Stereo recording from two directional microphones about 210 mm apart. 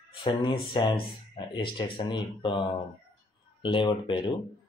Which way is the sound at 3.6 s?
25° left (ahead or behind).